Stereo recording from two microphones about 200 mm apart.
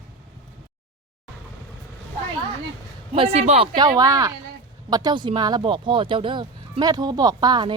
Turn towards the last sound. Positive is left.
turn(degrees=-20)  # may be behind; listen again after turning